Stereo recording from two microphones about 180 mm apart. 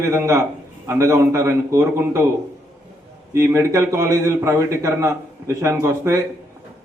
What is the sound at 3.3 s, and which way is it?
A man's voice, 15° right (ahead or behind).